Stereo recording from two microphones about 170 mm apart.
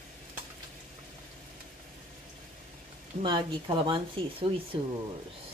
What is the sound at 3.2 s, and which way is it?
Speech, 30° right (ahead or behind).